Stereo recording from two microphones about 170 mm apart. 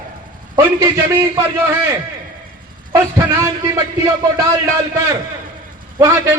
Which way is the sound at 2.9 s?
15° right (ahead or behind).